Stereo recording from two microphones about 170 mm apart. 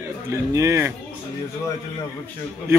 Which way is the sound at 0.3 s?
15° right (ahead or behind).